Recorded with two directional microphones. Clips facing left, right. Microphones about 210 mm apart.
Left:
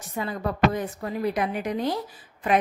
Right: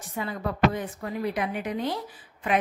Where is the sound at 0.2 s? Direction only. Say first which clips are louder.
Left 1 dB; 45° left (ahead or behind).